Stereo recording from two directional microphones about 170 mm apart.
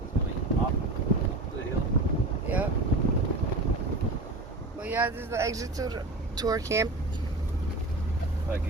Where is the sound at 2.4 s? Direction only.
10° right (ahead or behind).